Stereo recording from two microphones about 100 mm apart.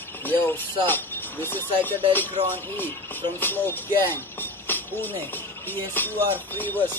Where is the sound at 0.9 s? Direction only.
20° left (ahead or behind).